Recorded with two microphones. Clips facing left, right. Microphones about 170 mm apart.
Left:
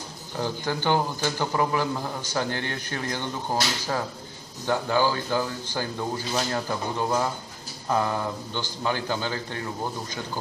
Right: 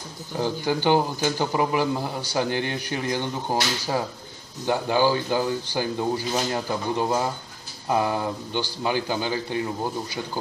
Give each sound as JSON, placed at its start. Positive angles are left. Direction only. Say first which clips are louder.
{"t": 0.4, "sound": "a man's voice", "louder": "right 4 dB", "side_deg": -15}